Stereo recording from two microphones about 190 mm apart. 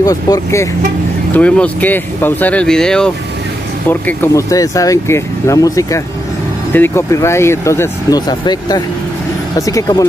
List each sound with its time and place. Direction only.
0.0 s speech: 20° left (ahead or behind)